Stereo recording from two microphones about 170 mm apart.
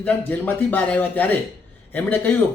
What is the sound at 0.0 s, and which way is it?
Speech, 10° left (ahead or behind).